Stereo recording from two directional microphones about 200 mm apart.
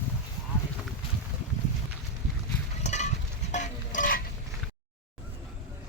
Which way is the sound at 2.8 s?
35° left (ahead or behind).